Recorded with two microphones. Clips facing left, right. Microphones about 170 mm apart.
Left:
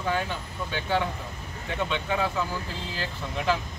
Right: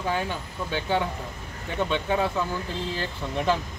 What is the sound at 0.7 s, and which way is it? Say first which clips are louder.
Speech: right 1 dB; 20° right (ahead or behind).